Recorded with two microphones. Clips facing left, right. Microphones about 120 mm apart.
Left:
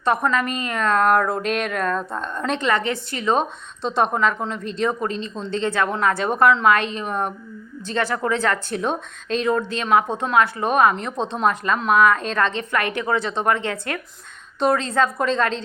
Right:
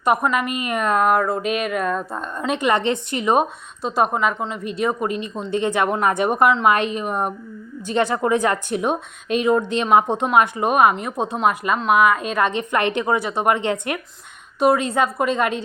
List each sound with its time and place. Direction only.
0.0 s a woman's voice: 10° right (ahead or behind)
3.8 s a woman's voice: 5° right (ahead or behind)